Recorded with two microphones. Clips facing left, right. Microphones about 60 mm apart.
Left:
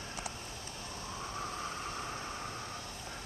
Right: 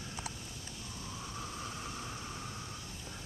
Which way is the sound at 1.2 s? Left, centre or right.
Left.